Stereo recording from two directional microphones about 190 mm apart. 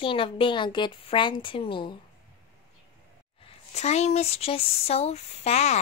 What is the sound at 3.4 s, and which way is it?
A woman's voice, 35° left (ahead or behind).